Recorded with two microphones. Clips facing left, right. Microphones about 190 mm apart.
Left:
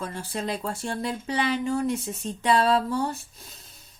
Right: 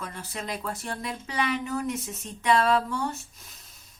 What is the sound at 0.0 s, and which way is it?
Speech, 30° left (ahead or behind).